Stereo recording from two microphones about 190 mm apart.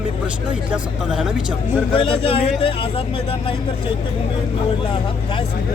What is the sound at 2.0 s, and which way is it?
Speech, 30° left (ahead or behind).